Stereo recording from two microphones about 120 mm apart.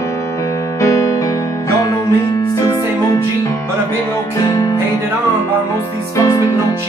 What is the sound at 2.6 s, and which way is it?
Music, 35° left (ahead or behind).